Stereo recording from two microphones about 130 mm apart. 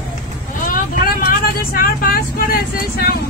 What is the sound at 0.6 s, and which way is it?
Vehicle, 90° left.